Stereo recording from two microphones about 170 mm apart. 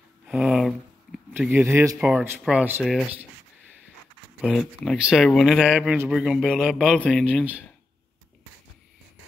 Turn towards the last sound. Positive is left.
turn(degrees=10)  # may be behind; listen again after turning